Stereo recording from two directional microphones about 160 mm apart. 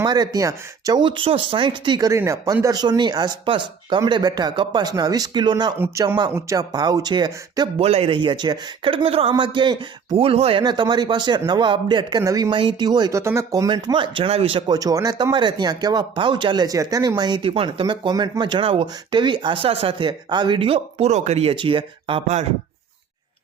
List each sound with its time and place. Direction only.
0.0 s speech: 25° right (ahead or behind)
5.8 s speech: 15° right (ahead or behind)
7.8 s speech: 40° right (ahead or behind)
10.6 s speech: 25° right (ahead or behind)